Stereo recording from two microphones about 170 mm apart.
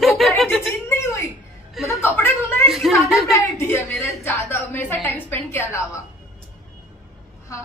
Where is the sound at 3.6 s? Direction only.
15° left (ahead or behind).